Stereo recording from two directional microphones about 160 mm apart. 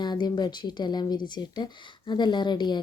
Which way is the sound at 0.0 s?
25° left (ahead or behind).